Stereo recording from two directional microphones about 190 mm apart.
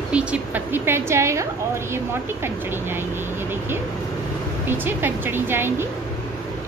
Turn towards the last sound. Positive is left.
turn(degrees=-10)  # may be behind; listen again after turning